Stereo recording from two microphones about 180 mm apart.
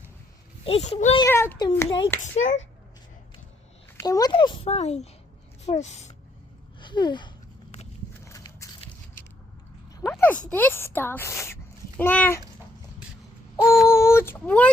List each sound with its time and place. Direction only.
0.6 s speech: 35° left (ahead or behind)
1.2 s a child's voice: 15° left (ahead or behind)
2.2 s speech: 40° left (ahead or behind)
3.9 s a child's voice: 20° left (ahead or behind); by 6.1 s 40° left (ahead or behind)
6.7 s a sound: 25° left (ahead or behind)
8.8 s biting: 35° left (ahead or behind)
10.1 s speech: 10° left (ahead or behind)
13.8 s child singing: 15° left (ahead or behind)